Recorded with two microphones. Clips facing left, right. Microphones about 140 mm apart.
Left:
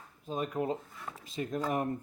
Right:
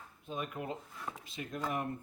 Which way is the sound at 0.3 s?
35° left (ahead or behind).